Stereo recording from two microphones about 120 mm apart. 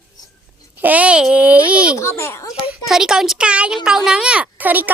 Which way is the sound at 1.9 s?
20° left (ahead or behind).